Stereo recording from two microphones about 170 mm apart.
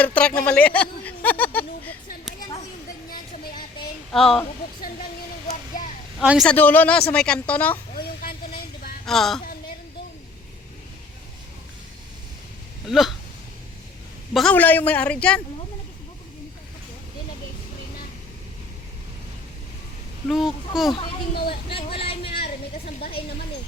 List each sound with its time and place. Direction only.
0.0 s speech: 10° left (ahead or behind)
4.1 s speech: centre (ahead or behind)
6.1 s speech: centre (ahead or behind)
6.5 s speech: 10° left (ahead or behind)
7.9 s vehicle: 60° left (ahead or behind)
9.0 s speech: centre (ahead or behind)
12.9 s speech: centre (ahead or behind)
14.3 s speech: 5° left (ahead or behind)
20.2 s speech: centre (ahead or behind)
21.5 s a sound: 35° left (ahead or behind)